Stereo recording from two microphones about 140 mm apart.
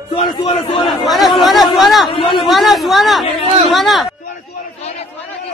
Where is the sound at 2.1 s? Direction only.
35° left (ahead or behind).